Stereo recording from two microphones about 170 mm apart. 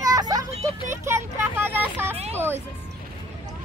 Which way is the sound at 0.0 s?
20° right (ahead or behind).